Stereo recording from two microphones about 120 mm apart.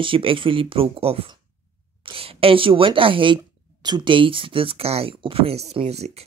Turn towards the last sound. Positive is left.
turn(degrees=-60)  # may be behind; listen again after turning